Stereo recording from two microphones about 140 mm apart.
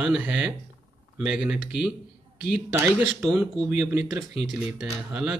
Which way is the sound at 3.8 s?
25° right (ahead or behind).